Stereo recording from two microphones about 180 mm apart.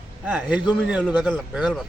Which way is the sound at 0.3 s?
10° right (ahead or behind).